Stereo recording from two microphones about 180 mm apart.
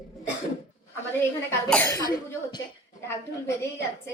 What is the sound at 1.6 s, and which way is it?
Speech, 5° left (ahead or behind).